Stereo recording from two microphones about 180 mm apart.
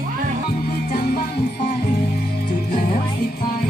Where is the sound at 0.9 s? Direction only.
60° left (ahead or behind).